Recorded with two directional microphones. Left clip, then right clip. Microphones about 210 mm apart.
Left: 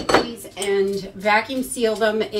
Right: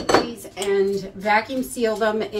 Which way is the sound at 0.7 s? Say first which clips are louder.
Right 1 dB; 15° left (ahead or behind).